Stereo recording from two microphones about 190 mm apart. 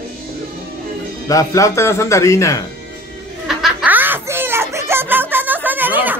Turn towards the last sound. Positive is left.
turn(degrees=-10)  # may be behind; listen again after turning